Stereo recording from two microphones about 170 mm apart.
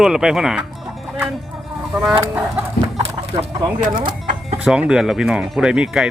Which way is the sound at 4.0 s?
30° right (ahead or behind).